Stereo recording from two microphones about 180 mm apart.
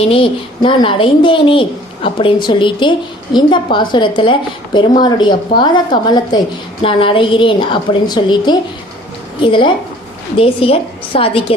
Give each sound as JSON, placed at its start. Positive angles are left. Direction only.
{"t": 0.0, "sound": "a woman's voice", "side_deg": 30}